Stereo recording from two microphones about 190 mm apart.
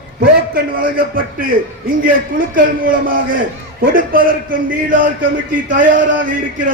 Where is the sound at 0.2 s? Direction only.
50° right (ahead or behind).